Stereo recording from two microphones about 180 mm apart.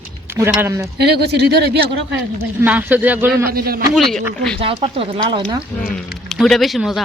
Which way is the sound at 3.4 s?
55° right (ahead or behind).